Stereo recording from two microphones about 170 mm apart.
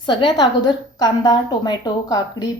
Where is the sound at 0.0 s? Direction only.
25° left (ahead or behind).